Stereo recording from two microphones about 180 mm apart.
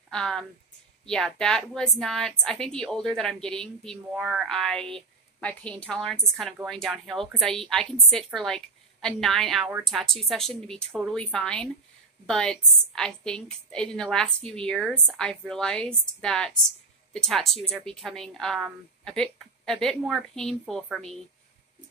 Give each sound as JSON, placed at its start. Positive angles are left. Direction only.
{"t": 0.1, "sound": "a woman's voice", "side_deg": 5}